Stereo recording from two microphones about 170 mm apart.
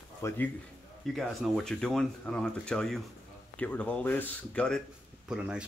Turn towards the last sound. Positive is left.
turn(degrees=-5)  # may be behind; listen again after turning